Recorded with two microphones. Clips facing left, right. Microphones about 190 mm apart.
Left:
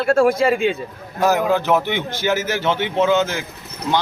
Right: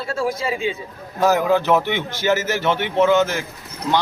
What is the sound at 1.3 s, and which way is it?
A man's voice, 15° left (ahead or behind).